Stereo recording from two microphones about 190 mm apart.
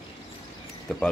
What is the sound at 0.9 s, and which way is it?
Speech, 5° left (ahead or behind).